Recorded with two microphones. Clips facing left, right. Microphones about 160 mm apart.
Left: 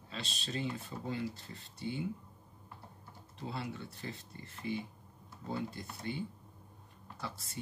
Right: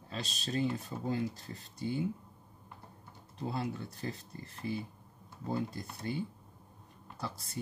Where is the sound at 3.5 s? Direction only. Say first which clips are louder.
Right 4 dB; 40° right (ahead or behind).